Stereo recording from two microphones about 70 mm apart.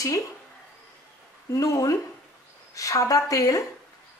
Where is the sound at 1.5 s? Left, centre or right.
Left.